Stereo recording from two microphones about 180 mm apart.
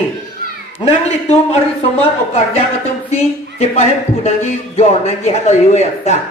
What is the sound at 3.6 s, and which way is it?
Speech, 35° left (ahead or behind).